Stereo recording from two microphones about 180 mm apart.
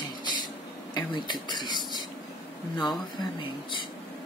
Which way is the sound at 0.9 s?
25° left (ahead or behind).